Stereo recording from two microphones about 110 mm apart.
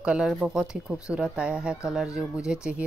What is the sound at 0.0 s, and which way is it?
Speech, 10° right (ahead or behind).